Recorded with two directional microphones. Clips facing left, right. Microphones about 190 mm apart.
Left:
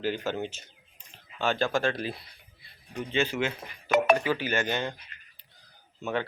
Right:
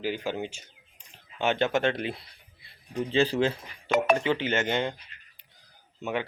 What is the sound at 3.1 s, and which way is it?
Speech, 35° right (ahead or behind).